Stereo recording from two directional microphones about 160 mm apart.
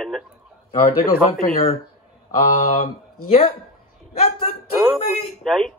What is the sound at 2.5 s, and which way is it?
Speech, 45° left (ahead or behind).